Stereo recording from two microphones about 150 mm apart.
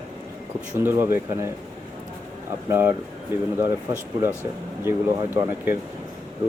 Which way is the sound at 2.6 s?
15° right (ahead or behind).